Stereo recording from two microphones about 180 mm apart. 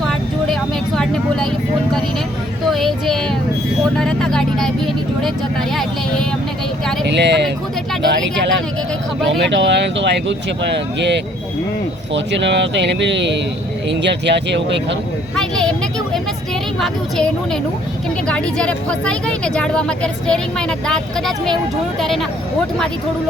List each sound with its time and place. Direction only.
0.0 s vehicle: 5° left (ahead or behind)
2.6 s speech: centre (ahead or behind)
7.0 s speech: 75° right (ahead or behind)
9.4 s speech: 80° right
15.4 s a sound: 5° left (ahead or behind)
16.8 s speech: 5° left (ahead or behind)